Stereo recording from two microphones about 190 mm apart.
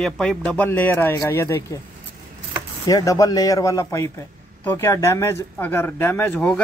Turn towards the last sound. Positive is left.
turn(degrees=5)  # may be behind; listen again after turning